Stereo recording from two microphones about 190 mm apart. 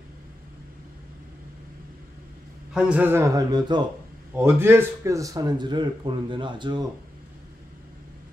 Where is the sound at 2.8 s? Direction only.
5° right (ahead or behind); by 6.8 s 25° right (ahead or behind).